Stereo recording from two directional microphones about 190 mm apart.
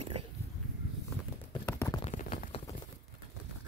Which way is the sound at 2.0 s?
35° left (ahead or behind).